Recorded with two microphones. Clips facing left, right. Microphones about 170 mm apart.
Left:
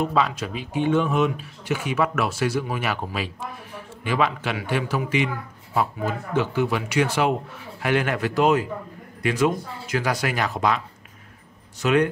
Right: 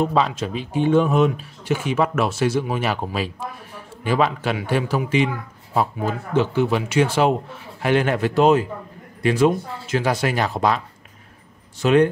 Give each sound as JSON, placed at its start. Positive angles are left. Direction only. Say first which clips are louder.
{"t": 0.0, "sound": "a man's voice", "louder": "right 3 dB", "side_deg": -30}
{"t": 11.8, "sound": "speech", "louder": "right 4 dB", "side_deg": -30}